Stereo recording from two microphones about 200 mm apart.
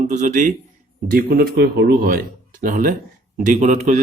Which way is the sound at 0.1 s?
40° right (ahead or behind).